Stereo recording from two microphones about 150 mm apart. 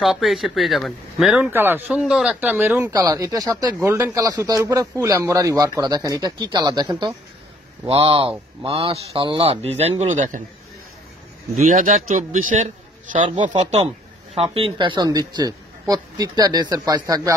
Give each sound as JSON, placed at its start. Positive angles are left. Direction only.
{"t": 0.0, "sound": "speech", "side_deg": 0}
{"t": 1.5, "sound": "speech", "side_deg": -15}
{"t": 1.9, "sound": "speech", "side_deg": -5}
{"t": 11.6, "sound": "speech", "side_deg": -55}
{"t": 13.2, "sound": "speech", "side_deg": -35}